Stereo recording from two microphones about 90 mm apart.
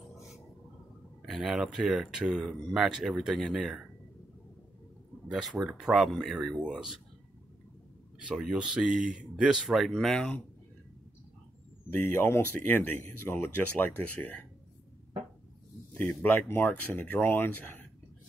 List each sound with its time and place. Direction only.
1.2 s speech: centre (ahead or behind)
5.3 s speech: centre (ahead or behind)
8.3 s speech: 10° right (ahead or behind); by 10.4 s 10° left (ahead or behind)
11.9 s speech: 20° left (ahead or behind)
15.9 s speech: 20° left (ahead or behind)